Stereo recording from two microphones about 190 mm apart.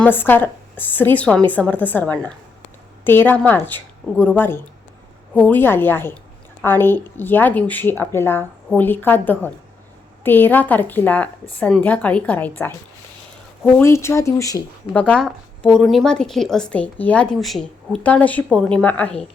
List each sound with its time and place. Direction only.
0.0 s speech: 10° left (ahead or behind)
13.7 s speech: 15° left (ahead or behind)
15.0 s speech: 5° left (ahead or behind)